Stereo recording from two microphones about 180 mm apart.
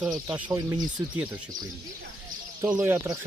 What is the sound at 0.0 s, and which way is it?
Speech, 10° right (ahead or behind).